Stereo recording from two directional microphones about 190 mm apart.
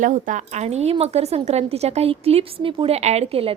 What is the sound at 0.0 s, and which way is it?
A woman's voice, 45° right (ahead or behind).